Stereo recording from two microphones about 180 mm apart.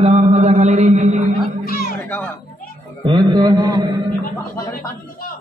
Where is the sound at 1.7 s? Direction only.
55° left (ahead or behind).